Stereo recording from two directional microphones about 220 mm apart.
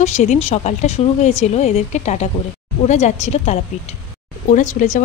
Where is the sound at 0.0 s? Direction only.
30° left (ahead or behind).